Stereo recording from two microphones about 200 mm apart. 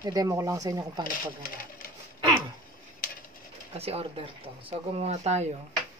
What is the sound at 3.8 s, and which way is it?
Speech, 30° right (ahead or behind).